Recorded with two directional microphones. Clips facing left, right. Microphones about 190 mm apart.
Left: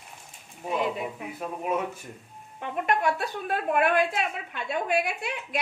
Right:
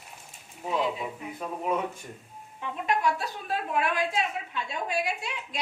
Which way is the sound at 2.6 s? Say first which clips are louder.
Left 2 dB; 55° left (ahead or behind).